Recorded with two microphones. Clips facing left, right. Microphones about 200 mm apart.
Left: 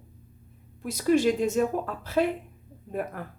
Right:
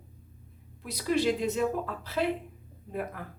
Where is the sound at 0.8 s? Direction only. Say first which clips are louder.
Left 5 dB; 45° left (ahead or behind).